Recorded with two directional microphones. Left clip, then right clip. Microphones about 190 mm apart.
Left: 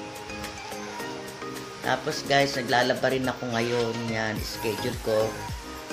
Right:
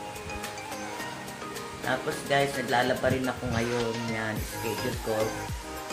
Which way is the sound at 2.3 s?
45° left (ahead or behind).